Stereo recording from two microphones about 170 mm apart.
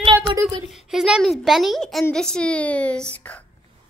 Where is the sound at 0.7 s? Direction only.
Centre (ahead or behind).